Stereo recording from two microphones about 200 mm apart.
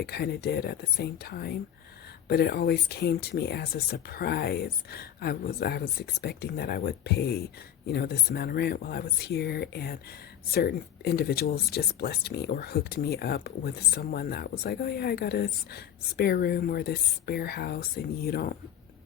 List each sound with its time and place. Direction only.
0.0 s speech: 55° left (ahead or behind)